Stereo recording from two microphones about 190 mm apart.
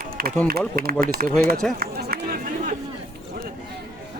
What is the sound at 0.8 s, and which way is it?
Speech, 50° right (ahead or behind).